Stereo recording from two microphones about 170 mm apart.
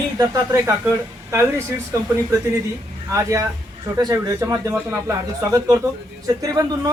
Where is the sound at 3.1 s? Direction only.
20° right (ahead or behind).